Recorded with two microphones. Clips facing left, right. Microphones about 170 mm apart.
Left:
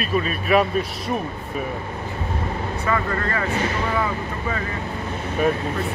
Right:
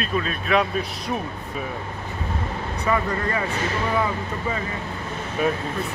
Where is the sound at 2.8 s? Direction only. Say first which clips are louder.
Right 1 dB; 15° right (ahead or behind).